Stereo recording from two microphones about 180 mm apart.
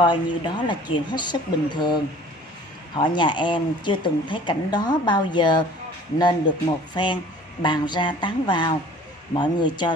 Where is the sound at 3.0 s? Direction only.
25° left (ahead or behind).